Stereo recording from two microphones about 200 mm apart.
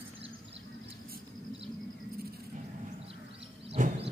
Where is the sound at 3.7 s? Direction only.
40° right (ahead or behind).